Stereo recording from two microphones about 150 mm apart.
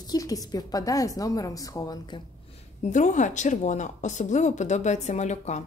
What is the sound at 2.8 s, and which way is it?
Speech, 55° left (ahead or behind).